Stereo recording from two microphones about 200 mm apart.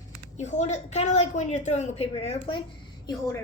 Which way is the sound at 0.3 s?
35° left (ahead or behind).